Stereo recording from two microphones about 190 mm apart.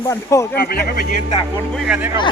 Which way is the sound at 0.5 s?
55° left (ahead or behind).